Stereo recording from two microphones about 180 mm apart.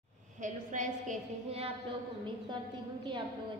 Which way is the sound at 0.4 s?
45° right (ahead or behind).